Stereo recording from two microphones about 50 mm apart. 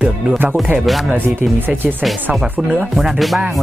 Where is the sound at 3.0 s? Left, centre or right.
Centre.